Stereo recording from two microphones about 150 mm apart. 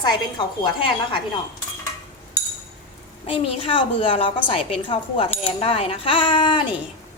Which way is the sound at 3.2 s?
40° left (ahead or behind).